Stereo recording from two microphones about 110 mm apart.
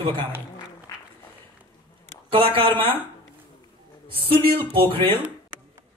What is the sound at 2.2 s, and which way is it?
Speech, 55° right (ahead or behind).